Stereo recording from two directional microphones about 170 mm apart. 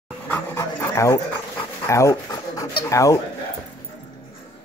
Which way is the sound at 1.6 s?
20° left (ahead or behind).